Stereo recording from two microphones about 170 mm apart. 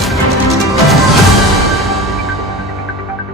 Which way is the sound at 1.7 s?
Centre (ahead or behind).